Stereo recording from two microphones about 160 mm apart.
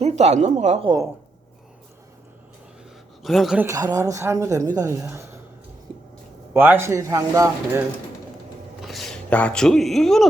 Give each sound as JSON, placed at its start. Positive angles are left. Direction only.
{"t": 0.0, "sound": "speech", "side_deg": -45}
{"t": 3.2, "sound": "a woman's voice", "side_deg": 0}
{"t": 3.7, "sound": "speech", "side_deg": -20}
{"t": 6.5, "sound": "speech", "side_deg": -15}
{"t": 8.8, "sound": "speech", "side_deg": 0}